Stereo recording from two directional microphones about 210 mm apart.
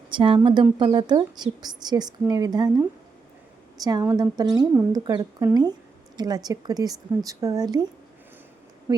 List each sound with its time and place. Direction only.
0.1 s a woman's voice: 25° right (ahead or behind)
3.8 s a woman's voice: 15° right (ahead or behind)